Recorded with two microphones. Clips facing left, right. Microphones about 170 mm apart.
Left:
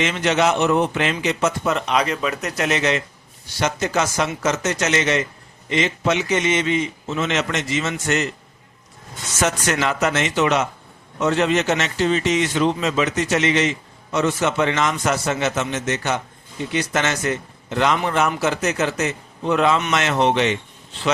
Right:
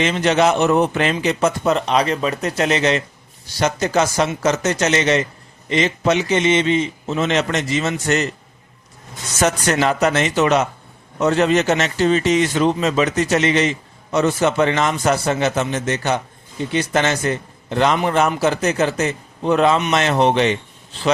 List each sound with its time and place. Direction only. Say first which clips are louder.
0.0 s a man's voice: right 3 dB; 35° right (ahead or behind)
9.4 s a man's voice: right 3 dB; 35° right (ahead or behind)